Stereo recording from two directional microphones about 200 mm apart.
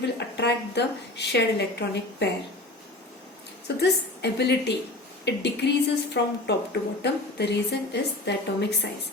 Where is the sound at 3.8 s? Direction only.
55° left (ahead or behind).